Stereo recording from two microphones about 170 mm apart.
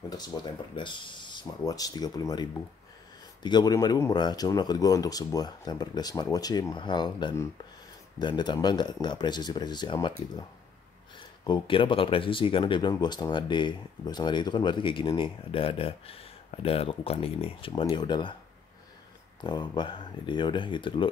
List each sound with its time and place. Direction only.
0.2 s speech: 25° left (ahead or behind)
11.1 s speech: 25° left (ahead or behind)
19.4 s speech: 25° left (ahead or behind)